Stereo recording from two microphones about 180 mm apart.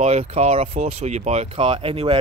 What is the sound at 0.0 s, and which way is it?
Speech, 35° right (ahead or behind).